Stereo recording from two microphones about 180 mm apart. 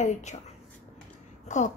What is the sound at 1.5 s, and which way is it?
Speech, 40° left (ahead or behind).